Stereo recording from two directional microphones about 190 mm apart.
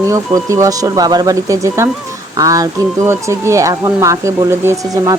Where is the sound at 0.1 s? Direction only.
15° right (ahead or behind).